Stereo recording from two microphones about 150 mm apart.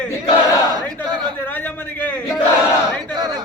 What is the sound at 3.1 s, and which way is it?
Speech, 25° right (ahead or behind).